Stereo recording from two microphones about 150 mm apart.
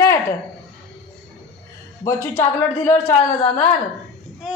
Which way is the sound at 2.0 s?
15° left (ahead or behind).